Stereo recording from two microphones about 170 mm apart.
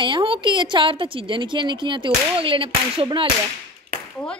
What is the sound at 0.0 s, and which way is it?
A woman's voice, 30° right (ahead or behind).